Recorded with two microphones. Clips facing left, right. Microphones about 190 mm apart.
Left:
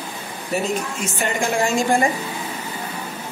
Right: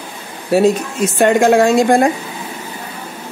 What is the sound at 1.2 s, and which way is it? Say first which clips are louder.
Speech: right 11 dB; 65° right (ahead or behind).